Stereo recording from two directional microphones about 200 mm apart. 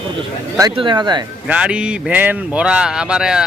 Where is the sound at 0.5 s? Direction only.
20° right (ahead or behind).